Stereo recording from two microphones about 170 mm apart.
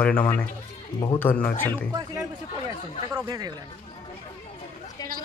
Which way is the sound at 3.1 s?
25° right (ahead or behind).